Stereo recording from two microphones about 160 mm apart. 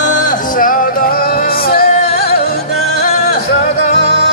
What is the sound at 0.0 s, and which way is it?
Music, 55° left (ahead or behind).